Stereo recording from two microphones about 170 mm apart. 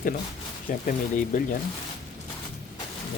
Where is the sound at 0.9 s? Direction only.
50° left (ahead or behind).